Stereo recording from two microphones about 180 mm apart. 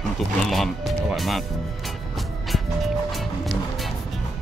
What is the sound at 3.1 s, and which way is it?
Music, centre (ahead or behind).